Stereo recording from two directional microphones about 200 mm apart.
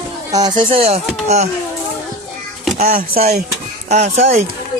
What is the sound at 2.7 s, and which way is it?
Speech, 35° right (ahead or behind).